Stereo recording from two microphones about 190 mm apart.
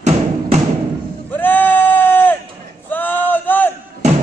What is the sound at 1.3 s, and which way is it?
Sheep, 10° left (ahead or behind).